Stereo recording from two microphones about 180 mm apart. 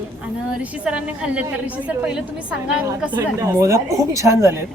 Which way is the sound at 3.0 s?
15° right (ahead or behind).